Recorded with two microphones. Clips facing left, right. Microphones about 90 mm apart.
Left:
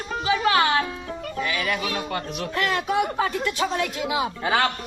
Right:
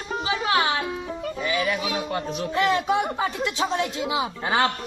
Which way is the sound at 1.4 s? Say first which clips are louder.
Right 2 dB; 20° right (ahead or behind).